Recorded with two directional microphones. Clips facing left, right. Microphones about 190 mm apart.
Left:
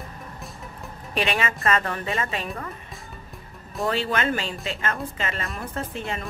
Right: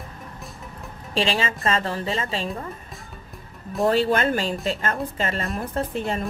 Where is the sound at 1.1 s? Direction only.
30° right (ahead or behind).